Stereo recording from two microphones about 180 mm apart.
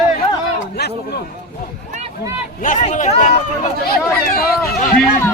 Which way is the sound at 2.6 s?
45° left (ahead or behind).